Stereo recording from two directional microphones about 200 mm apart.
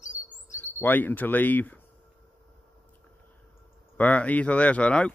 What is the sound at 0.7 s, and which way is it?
Speech, 10° left (ahead or behind).